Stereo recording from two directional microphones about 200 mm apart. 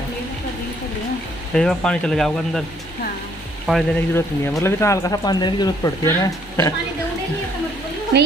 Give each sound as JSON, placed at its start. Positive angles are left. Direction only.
{"t": 1.5, "sound": "speech", "side_deg": 5}
{"t": 3.7, "sound": "speech", "side_deg": 0}
{"t": 4.1, "sound": "speech", "side_deg": 10}